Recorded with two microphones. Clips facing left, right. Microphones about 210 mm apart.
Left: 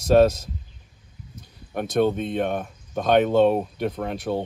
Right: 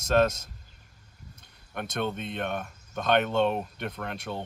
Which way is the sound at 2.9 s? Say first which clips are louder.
Left 7 dB; 5° left (ahead or behind).